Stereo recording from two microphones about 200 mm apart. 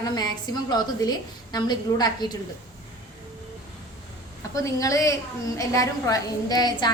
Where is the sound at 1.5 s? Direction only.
20° left (ahead or behind).